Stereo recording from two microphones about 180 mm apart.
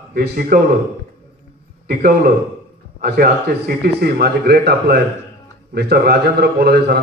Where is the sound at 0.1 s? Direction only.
55° right (ahead or behind).